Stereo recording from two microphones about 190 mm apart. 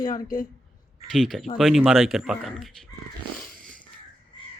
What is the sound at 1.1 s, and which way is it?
A man's voice, centre (ahead or behind).